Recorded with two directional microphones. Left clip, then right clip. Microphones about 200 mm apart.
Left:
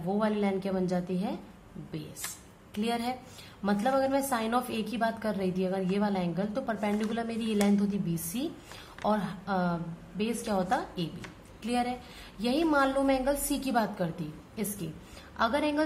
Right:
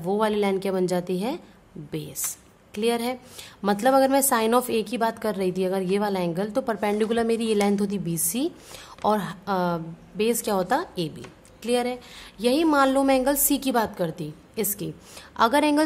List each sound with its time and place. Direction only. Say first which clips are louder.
0.1 s a woman's voice: right 7 dB; 45° right (ahead or behind)
2.7 s a woman's voice: right 7 dB; 40° right (ahead or behind)